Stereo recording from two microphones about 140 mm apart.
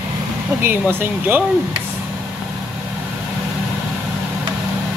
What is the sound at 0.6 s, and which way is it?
Speech, 15° right (ahead or behind).